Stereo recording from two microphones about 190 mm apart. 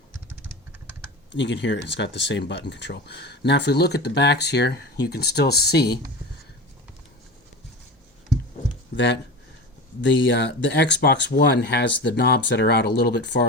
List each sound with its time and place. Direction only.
1.3 s speech: 70° left (ahead or behind)
10.0 s speech: 70° left (ahead or behind)